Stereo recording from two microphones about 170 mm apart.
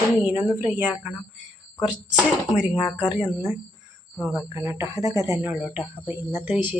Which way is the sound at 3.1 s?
10° right (ahead or behind).